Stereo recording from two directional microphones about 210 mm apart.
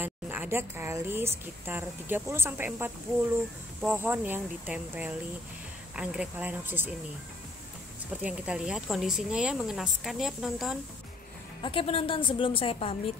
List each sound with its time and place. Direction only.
0.0 s a woman's voice: 10° right (ahead or behind)
8.1 s speech: 5° right (ahead or behind)
11.6 s a woman's voice: 25° left (ahead or behind)